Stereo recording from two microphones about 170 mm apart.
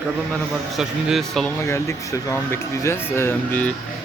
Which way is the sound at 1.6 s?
15° left (ahead or behind).